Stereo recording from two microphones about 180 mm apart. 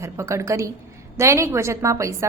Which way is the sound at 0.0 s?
15° right (ahead or behind).